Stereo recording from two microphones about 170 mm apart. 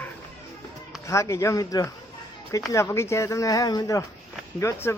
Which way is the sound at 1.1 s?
15° left (ahead or behind).